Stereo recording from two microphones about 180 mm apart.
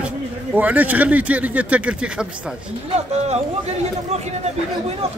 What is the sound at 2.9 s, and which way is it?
Speech, 35° right (ahead or behind).